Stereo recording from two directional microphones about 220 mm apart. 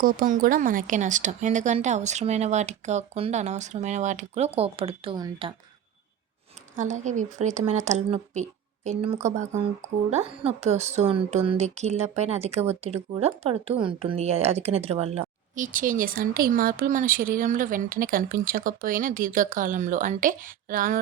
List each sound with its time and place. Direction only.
0.0 s a woman's voice: 40° right (ahead or behind); by 5.5 s 20° right (ahead or behind)
6.7 s a woman's voice: 35° right (ahead or behind)